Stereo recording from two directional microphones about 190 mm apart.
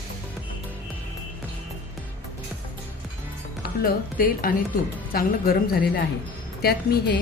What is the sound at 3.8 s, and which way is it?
A woman's voice, 50° left (ahead or behind).